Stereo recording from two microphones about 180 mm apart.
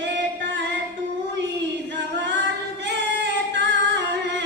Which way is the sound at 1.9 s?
80° right.